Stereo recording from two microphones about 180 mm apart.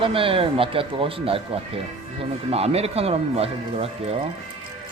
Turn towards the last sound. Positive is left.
turn(degrees=-35)  # may be behind; listen again after turning